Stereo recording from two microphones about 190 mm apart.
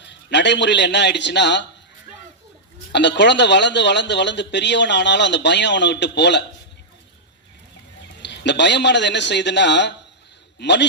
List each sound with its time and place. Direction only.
0.0 s speech: 65° left (ahead or behind)
2.9 s speech: 65° left (ahead or behind)
8.2 s speech: 65° left (ahead or behind)